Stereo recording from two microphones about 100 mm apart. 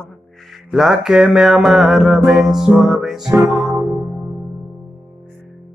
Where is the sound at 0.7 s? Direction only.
5° right (ahead or behind).